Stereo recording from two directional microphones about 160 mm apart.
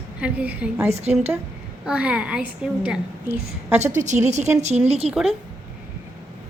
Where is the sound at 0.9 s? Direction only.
40° right (ahead or behind).